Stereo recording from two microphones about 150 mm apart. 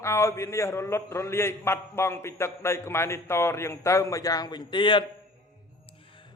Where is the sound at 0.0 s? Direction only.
20° left (ahead or behind).